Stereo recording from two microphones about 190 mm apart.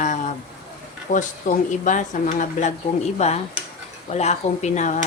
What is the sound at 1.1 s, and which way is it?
Speech, 45° left (ahead or behind).